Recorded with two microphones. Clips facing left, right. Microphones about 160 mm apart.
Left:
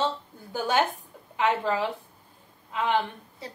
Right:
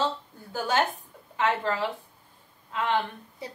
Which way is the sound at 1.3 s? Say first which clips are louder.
Left 1 dB; 15° left (ahead or behind).